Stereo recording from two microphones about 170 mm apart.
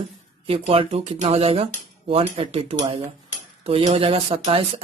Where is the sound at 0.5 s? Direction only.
35° right (ahead or behind).